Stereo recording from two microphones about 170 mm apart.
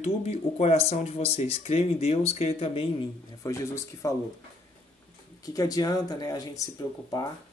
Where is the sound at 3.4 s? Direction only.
20° left (ahead or behind).